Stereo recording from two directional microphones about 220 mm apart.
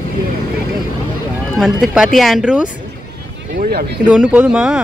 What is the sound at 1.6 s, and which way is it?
Speech, centre (ahead or behind).